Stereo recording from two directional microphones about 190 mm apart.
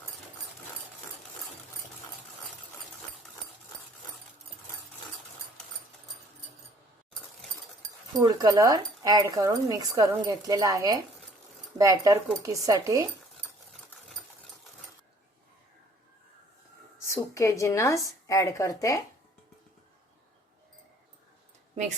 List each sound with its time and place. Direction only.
8.1 s speech: 20° right (ahead or behind)
17.1 s a woman's voice: 15° left (ahead or behind)